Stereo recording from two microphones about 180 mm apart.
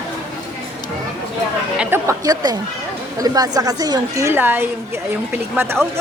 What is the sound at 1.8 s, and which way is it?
A woman's voice, 15° right (ahead or behind).